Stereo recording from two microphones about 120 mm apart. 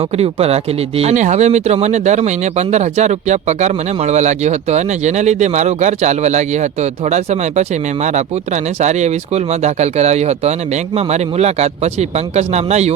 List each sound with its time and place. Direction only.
0.2 s speech: 55° right (ahead or behind)
8.8 s speech: 70° right (ahead or behind)